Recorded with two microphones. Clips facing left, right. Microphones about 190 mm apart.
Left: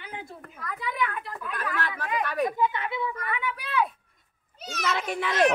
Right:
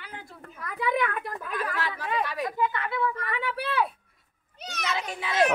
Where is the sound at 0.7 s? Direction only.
60° right (ahead or behind).